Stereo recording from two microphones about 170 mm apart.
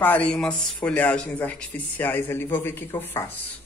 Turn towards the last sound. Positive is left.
turn(degrees=10)  # may be behind; listen again after turning